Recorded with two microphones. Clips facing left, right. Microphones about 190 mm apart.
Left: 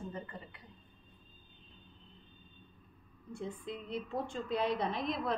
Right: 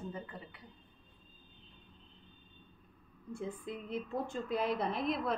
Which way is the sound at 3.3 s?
5° right (ahead or behind).